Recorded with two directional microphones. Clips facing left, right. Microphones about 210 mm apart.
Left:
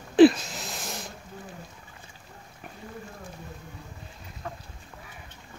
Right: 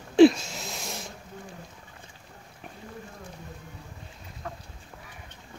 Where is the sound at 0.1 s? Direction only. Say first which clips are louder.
Even; centre (ahead or behind).